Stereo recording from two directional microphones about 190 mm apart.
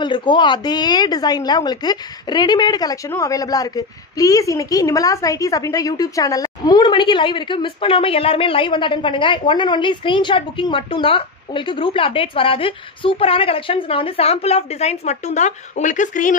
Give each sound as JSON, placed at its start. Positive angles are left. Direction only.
{"t": 0.0, "sound": "a woman's voice", "side_deg": 25}